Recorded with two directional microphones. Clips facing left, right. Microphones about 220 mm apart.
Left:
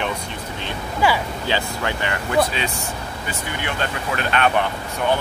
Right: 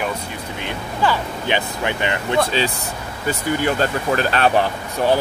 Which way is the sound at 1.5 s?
20° right (ahead or behind).